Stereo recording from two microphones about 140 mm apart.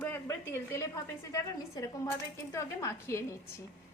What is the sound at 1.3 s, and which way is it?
A woman's voice, 25° left (ahead or behind).